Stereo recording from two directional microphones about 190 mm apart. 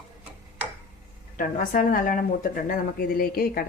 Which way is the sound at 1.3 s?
45° left (ahead or behind).